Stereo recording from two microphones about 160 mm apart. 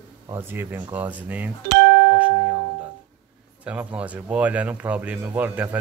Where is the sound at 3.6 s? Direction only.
10° right (ahead or behind).